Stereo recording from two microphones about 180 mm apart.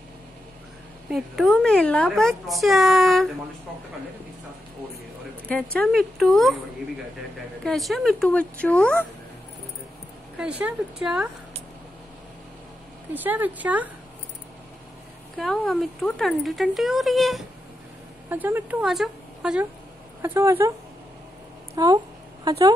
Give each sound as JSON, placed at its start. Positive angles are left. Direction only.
{"t": 1.1, "sound": "speech", "side_deg": 0}
{"t": 5.5, "sound": "speech", "side_deg": 5}
{"t": 7.6, "sound": "speech", "side_deg": 0}
{"t": 10.4, "sound": "speech", "side_deg": -5}
{"t": 13.1, "sound": "speech", "side_deg": -10}
{"t": 15.3, "sound": "speech", "side_deg": 0}
{"t": 18.3, "sound": "a woman's voice", "side_deg": -10}
{"t": 21.7, "sound": "speech", "side_deg": -20}